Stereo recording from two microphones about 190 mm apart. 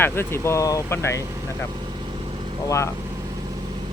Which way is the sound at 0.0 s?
15° left (ahead or behind).